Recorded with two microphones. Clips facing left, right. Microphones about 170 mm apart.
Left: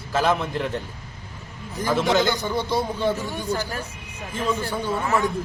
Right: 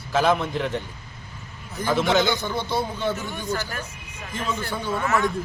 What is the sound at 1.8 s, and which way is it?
A man's voice, centre (ahead or behind).